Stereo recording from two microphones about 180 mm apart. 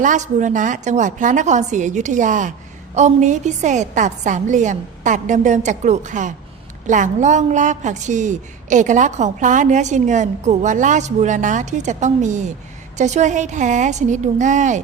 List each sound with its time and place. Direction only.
0.0 s a woman's voice: 45° right (ahead or behind)